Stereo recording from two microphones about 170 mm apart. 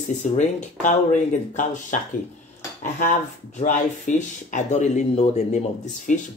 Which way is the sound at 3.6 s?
45° left (ahead or behind).